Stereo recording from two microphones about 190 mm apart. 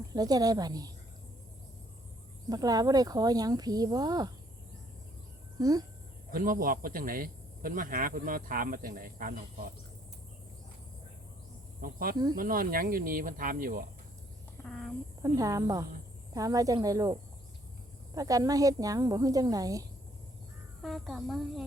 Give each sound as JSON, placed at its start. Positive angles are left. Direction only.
{"t": 0.1, "sound": "speech", "side_deg": -20}
{"t": 2.5, "sound": "speech", "side_deg": -20}
{"t": 5.5, "sound": "speech", "side_deg": -20}
{"t": 6.3, "sound": "speech", "side_deg": -50}
{"t": 11.8, "sound": "speech", "side_deg": -50}
{"t": 12.1, "sound": "speech", "side_deg": -20}
{"t": 12.4, "sound": "speech", "side_deg": -50}
{"t": 14.6, "sound": "speech", "side_deg": 0}
{"t": 15.2, "sound": "speech", "side_deg": -20}
{"t": 20.8, "sound": "speech", "side_deg": 0}